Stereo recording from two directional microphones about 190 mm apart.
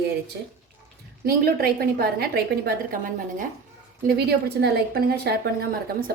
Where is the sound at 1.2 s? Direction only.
50° right (ahead or behind).